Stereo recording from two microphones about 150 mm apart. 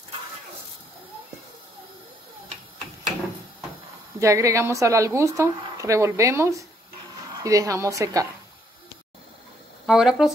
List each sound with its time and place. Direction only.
4.2 s speech: 20° right (ahead or behind)
9.8 s speech: 5° right (ahead or behind)